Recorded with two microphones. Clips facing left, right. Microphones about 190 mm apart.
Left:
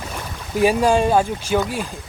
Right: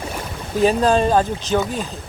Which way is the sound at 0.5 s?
10° left (ahead or behind).